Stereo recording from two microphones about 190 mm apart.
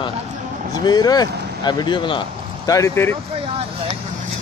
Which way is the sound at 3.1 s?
30° right (ahead or behind).